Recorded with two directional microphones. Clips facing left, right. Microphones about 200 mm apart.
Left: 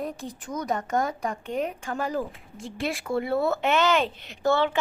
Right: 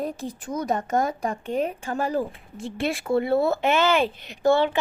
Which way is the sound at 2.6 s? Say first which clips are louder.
Right 5 dB; 60° right (ahead or behind).